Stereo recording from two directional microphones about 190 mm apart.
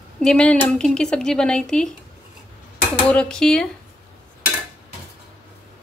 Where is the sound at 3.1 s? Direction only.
5° left (ahead or behind).